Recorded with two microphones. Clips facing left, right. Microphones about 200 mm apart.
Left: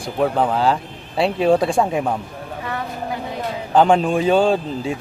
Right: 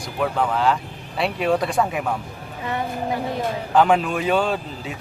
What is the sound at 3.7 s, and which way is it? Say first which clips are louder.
A man's voice: left 3 dB; 30° left (ahead or behind).